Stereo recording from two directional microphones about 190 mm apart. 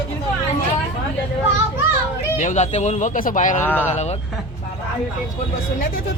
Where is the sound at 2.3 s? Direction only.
40° left (ahead or behind).